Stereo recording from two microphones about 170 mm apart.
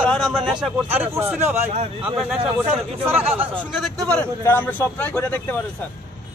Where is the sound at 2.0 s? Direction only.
5° right (ahead or behind).